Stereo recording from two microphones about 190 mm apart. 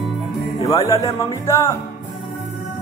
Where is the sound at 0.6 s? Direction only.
15° left (ahead or behind).